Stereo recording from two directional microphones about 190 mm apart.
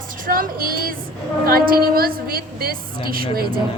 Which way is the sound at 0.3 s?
50° right (ahead or behind).